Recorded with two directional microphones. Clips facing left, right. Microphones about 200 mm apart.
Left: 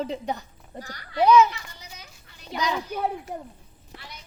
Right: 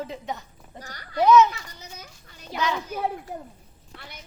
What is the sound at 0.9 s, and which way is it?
Speech, 45° right (ahead or behind).